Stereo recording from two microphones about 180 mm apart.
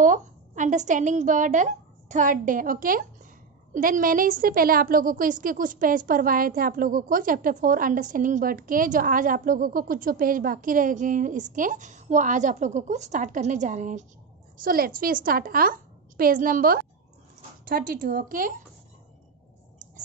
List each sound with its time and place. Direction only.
0.0 s a woman's voice: 45° right (ahead or behind)